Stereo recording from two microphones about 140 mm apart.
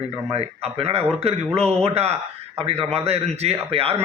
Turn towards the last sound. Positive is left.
turn(degrees=-45)  # may be behind; listen again after turning